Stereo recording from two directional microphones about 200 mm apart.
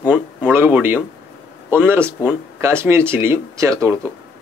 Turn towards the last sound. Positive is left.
turn(degrees=-15)  # may be behind; listen again after turning